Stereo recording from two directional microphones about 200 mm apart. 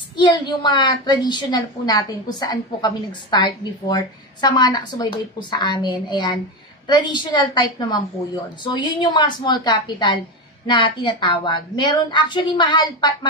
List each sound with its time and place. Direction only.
0.2 s a woman's voice: 20° left (ahead or behind)